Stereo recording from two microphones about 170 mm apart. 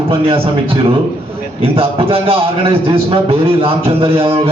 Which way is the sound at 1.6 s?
35° right (ahead or behind).